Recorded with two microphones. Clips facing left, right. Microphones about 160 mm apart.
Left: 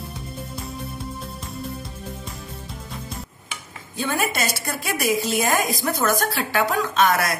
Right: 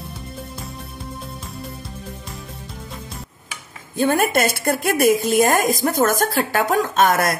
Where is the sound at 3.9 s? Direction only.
50° right (ahead or behind).